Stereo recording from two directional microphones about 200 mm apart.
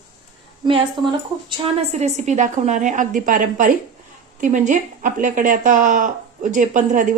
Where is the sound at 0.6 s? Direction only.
25° right (ahead or behind).